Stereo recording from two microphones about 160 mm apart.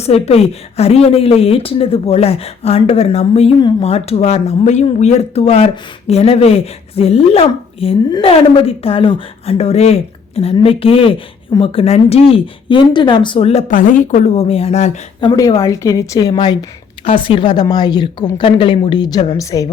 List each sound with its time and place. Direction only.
0.0 s speech: 40° left (ahead or behind)
15.2 s a woman's voice: 25° left (ahead or behind)